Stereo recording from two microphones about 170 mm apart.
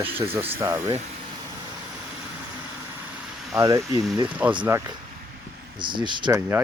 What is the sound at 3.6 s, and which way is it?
Speech, 20° right (ahead or behind).